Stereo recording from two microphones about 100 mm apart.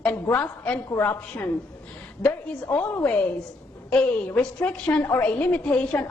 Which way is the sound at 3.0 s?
15° left (ahead or behind).